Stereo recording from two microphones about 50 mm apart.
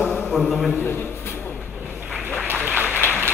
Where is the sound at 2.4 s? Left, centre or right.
Right.